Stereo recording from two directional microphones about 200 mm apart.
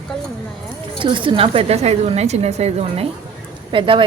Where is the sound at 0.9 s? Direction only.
25° right (ahead or behind).